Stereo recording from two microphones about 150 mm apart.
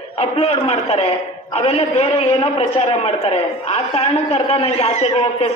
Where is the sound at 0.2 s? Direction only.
40° left (ahead or behind).